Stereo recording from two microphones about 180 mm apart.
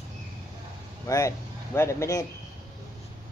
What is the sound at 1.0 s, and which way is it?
Speech, 20° left (ahead or behind).